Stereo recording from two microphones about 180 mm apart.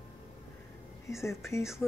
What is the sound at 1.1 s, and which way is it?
Speech, 15° left (ahead or behind).